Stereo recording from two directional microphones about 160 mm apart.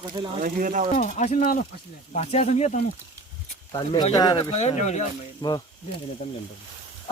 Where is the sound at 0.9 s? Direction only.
50° left (ahead or behind).